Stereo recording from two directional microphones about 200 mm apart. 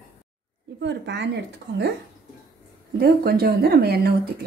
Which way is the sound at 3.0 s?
50° right (ahead or behind).